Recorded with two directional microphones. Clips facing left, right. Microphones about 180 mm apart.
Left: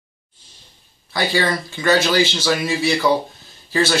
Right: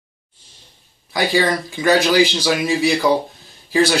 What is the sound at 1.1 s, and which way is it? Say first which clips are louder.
Speech: right 2 dB; 15° right (ahead or behind).